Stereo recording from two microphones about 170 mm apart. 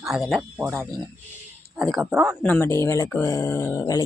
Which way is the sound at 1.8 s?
Centre (ahead or behind).